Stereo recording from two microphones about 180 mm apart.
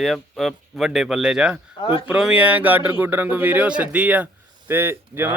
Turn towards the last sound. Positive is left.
turn(degrees=-15)  # may be behind; listen again after turning